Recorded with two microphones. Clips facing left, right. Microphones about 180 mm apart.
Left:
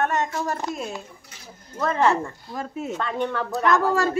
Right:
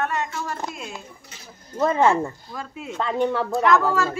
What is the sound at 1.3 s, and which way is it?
Speech, 20° right (ahead or behind).